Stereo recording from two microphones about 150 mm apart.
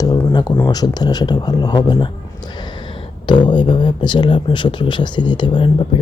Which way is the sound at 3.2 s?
30° left (ahead or behind).